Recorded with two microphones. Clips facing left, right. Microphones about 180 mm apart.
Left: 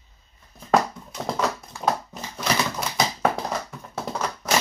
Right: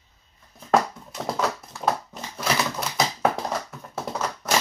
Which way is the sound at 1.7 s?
Centre (ahead or behind).